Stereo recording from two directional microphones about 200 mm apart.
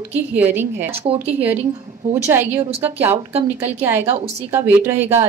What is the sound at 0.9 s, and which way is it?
Speech, 30° right (ahead or behind).